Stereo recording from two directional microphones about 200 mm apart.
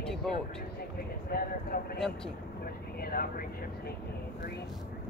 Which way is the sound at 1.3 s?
50° left (ahead or behind).